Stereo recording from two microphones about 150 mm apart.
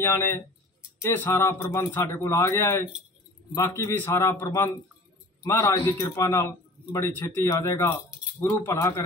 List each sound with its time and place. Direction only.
0.0 s a man's voice: 15° left (ahead or behind)